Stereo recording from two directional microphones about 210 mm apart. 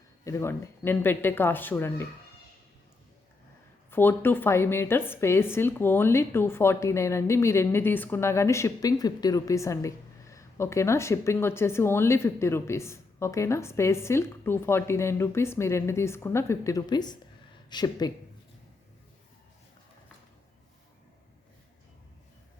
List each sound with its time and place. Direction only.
0.3 s a woman's voice: 15° left (ahead or behind)
3.9 s a woman's voice: 10° left (ahead or behind)